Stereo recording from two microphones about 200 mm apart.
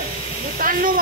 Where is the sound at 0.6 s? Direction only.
45° right (ahead or behind).